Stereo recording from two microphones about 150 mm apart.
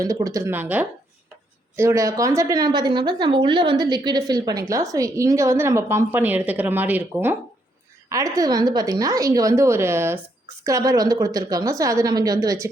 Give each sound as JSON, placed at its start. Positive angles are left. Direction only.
{"t": 0.0, "sound": "a woman's voice", "side_deg": -25}